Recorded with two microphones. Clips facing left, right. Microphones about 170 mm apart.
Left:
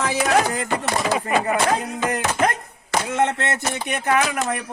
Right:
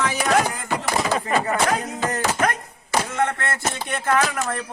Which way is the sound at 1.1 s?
10° left (ahead or behind).